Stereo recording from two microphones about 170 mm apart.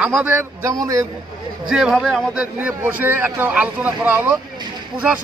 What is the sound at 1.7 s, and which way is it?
A man's voice, 5° right (ahead or behind).